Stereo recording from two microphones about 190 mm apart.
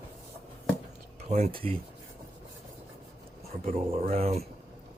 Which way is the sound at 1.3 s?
30° right (ahead or behind).